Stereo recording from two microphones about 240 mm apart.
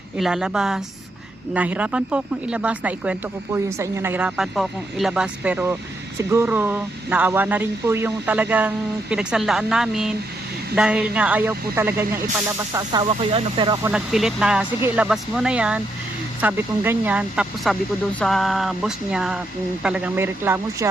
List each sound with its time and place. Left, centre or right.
0.2 s speech: centre; by 13.7 s right
13.8 s speech: centre